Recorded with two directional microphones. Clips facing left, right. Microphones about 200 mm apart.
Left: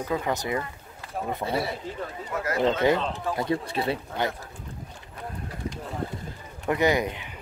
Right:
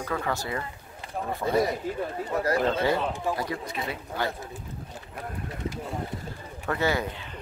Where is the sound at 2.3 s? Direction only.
35° right (ahead or behind).